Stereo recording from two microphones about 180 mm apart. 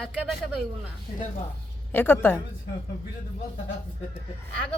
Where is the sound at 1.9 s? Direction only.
10° left (ahead or behind).